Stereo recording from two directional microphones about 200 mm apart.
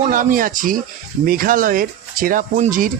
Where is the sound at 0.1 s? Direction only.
45° right (ahead or behind).